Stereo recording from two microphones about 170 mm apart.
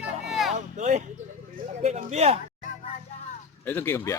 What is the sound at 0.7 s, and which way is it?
Speech, 40° right (ahead or behind).